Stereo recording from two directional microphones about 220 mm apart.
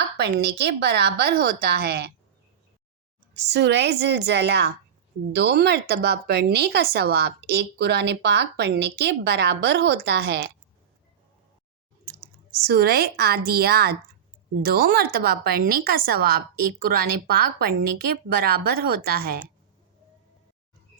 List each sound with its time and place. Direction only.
0.2 s speech: 50° right (ahead or behind)
3.3 s speech: 50° right (ahead or behind)
12.0 s speech: 45° right (ahead or behind)